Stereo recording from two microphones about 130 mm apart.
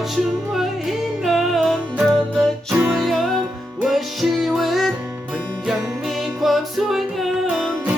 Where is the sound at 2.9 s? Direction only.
Centre (ahead or behind).